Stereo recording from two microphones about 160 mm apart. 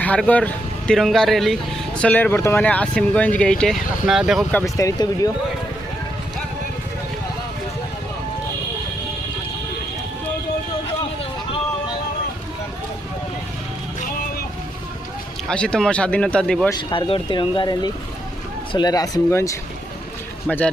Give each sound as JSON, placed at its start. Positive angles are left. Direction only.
{"t": 0.0, "sound": "speech", "side_deg": 10}
{"t": 4.5, "sound": "speech", "side_deg": 20}
{"t": 15.4, "sound": "speech", "side_deg": 5}
{"t": 16.9, "sound": "speech", "side_deg": 30}